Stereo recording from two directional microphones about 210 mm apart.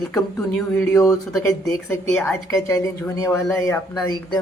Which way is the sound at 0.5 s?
5° left (ahead or behind).